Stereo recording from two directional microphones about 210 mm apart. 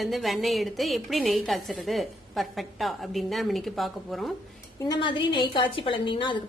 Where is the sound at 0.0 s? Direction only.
Centre (ahead or behind).